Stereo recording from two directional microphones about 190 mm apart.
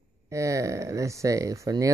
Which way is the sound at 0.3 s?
15° right (ahead or behind).